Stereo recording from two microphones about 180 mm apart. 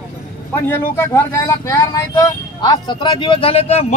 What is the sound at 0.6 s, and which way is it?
Speech, 15° left (ahead or behind).